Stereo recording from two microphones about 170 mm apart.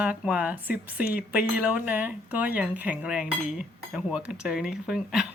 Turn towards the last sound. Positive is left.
turn(degrees=-5)  # may be behind; listen again after turning